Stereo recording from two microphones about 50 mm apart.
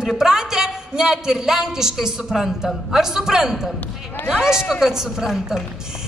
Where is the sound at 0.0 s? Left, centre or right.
Centre.